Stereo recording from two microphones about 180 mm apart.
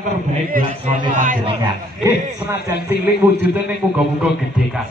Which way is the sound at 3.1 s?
10° right (ahead or behind).